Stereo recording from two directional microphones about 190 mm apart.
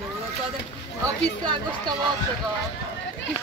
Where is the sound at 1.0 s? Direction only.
20° right (ahead or behind).